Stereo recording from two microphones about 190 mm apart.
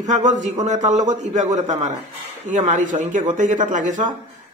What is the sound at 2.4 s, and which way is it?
Speech, 40° right (ahead or behind).